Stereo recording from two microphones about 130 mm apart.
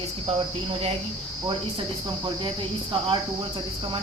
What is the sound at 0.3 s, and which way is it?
Speech, 50° right (ahead or behind).